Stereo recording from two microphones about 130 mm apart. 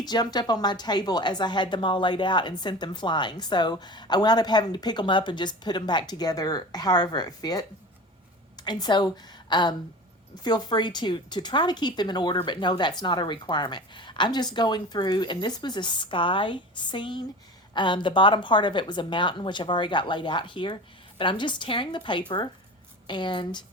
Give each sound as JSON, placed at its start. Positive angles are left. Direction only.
{"t": 0.0, "sound": "a woman's voice", "side_deg": 30}